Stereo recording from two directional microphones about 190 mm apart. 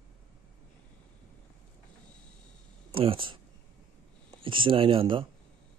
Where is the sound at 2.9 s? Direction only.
30° right (ahead or behind).